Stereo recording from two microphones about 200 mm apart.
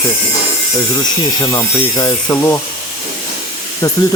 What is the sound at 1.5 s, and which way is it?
Speech, 15° left (ahead or behind).